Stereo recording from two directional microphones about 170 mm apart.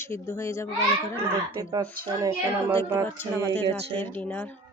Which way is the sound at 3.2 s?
15° left (ahead or behind).